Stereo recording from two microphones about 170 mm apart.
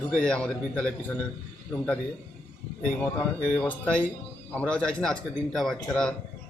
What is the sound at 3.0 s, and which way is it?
A man's voice, 5° left (ahead or behind).